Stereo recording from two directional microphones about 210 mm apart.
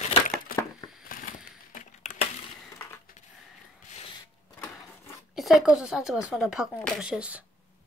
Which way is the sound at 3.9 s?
30° left (ahead or behind).